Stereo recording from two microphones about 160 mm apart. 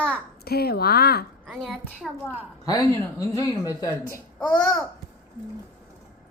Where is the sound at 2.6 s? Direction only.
20° left (ahead or behind).